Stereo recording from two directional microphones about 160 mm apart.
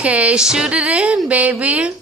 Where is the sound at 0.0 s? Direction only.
10° right (ahead or behind).